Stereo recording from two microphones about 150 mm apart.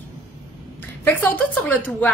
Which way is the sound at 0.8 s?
10° left (ahead or behind).